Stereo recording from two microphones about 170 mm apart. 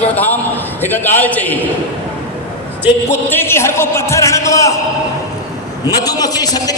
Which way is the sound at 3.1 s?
15° left (ahead or behind).